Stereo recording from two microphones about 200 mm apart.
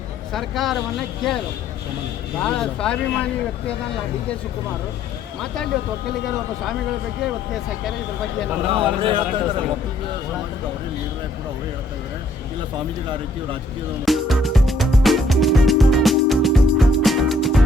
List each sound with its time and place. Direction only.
0.3 s speech: centre (ahead or behind)
2.4 s speech: 5° left (ahead or behind)
8.7 s speech: 25° right (ahead or behind)
14.0 s music: centre (ahead or behind)